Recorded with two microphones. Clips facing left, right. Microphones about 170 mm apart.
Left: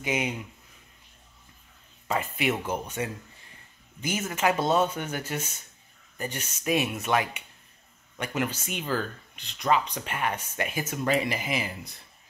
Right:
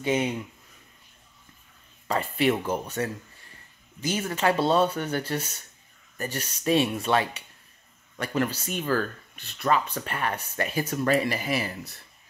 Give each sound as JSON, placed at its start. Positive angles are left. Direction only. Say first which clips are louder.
{"t": 0.0, "sound": "speech", "louder": "right 4 dB", "side_deg": 15}
{"t": 2.3, "sound": "speech", "louder": "right 7 dB", "side_deg": 10}
{"t": 4.1, "sound": "speech", "louder": "right 1 dB", "side_deg": 15}